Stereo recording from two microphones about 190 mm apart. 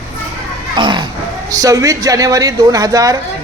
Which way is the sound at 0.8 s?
25° right (ahead or behind).